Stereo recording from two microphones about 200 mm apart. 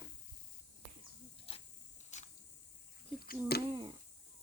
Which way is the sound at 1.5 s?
25° left (ahead or behind).